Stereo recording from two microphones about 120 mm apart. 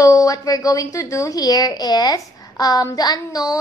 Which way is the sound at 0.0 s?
30° left (ahead or behind).